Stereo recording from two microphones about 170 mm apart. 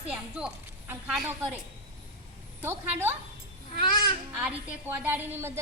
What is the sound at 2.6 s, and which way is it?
Speech, 15° right (ahead or behind).